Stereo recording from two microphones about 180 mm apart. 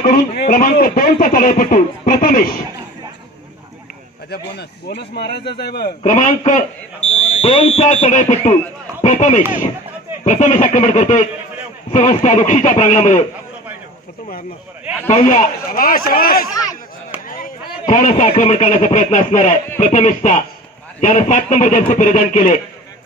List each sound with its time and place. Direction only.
0.0 s a sound: 50° left (ahead or behind)
4.3 s a man's voice: 70° left (ahead or behind); by 13.2 s 40° left (ahead or behind)
15.0 s speech: 40° left (ahead or behind)
15.7 s a man's voice: 50° left (ahead or behind)